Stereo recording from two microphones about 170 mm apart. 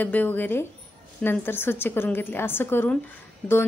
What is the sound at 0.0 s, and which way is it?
A woman's voice, 10° left (ahead or behind).